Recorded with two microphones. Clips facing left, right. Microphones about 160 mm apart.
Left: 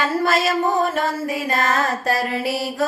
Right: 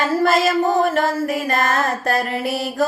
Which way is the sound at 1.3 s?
55° right (ahead or behind).